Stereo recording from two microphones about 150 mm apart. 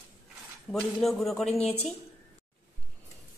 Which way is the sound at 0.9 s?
Centre (ahead or behind).